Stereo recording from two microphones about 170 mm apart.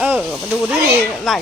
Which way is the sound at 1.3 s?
Centre (ahead or behind).